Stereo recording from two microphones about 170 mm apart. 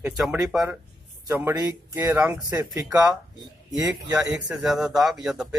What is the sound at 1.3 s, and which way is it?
Speech, 15° right (ahead or behind).